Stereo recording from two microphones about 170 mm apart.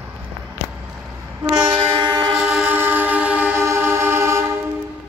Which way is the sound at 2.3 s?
5° right (ahead or behind).